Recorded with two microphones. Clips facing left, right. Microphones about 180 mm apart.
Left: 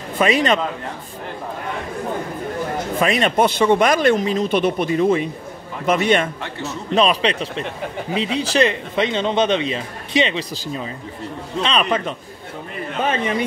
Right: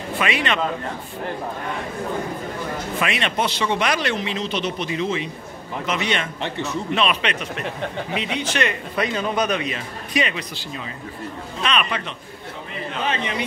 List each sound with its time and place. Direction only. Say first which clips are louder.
0.2 s speech: left 7 dB; 40° left (ahead or behind)
3.0 s speech: left 7 dB; 40° left (ahead or behind)
7.0 s speech: left 8 dB; 35° left (ahead or behind)
13.0 s speech: left 5 dB; 45° left (ahead or behind)